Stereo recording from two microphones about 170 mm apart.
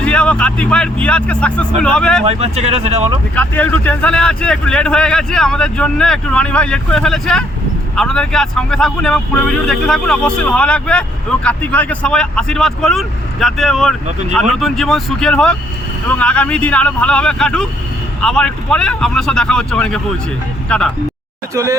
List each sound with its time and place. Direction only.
0.0 s speech: 5° left (ahead or behind)
2.2 s speech: 40° right (ahead or behind)
3.3 s speech: 10° left (ahead or behind)
21.5 s speech: 20° right (ahead or behind)